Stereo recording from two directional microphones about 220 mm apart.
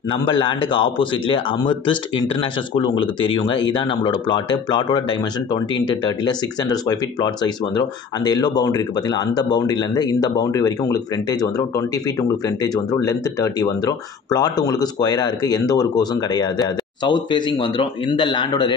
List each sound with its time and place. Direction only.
0.1 s speech: 20° left (ahead or behind)